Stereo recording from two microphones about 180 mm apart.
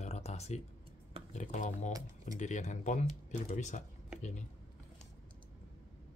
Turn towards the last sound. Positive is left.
turn(degrees=40)  # may be behind; listen again after turning